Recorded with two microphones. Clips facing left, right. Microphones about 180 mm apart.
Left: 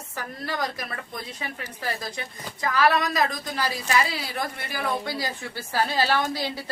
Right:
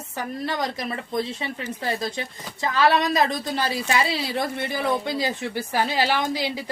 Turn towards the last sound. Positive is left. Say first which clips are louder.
# right 2 dB
turn(degrees=-15)  # may be behind; listen again after turning